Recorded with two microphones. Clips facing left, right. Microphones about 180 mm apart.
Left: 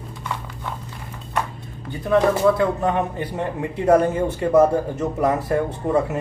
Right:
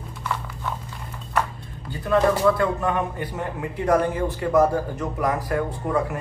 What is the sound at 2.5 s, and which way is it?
A man's voice, 20° left (ahead or behind).